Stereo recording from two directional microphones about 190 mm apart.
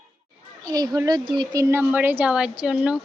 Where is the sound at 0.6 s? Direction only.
20° right (ahead or behind).